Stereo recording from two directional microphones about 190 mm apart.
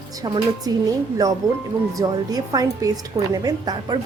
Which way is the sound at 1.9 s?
20° right (ahead or behind).